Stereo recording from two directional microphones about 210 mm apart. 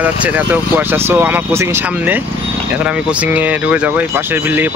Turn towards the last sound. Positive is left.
turn(degrees=-10)  # may be behind; listen again after turning